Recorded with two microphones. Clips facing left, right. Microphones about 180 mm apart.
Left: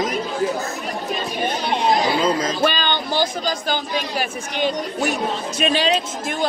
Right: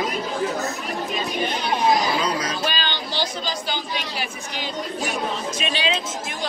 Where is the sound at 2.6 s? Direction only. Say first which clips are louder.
Left 6 dB; 55° left (ahead or behind).